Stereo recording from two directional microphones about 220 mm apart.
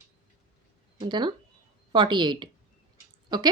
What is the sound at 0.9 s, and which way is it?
Speech, 20° right (ahead or behind).